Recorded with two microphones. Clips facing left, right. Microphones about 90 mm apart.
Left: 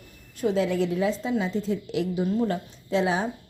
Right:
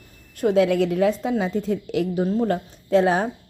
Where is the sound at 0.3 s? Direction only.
60° right (ahead or behind).